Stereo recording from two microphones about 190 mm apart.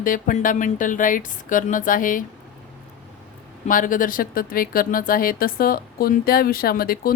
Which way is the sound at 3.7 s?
45° left (ahead or behind).